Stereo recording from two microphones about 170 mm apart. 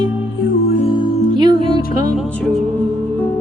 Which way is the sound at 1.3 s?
25° right (ahead or behind).